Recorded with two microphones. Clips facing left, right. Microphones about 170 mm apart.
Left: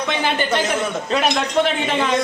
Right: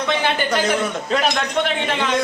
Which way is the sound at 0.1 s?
Centre (ahead or behind).